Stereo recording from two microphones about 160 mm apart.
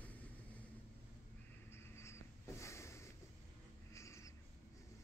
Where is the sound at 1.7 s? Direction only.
15° left (ahead or behind).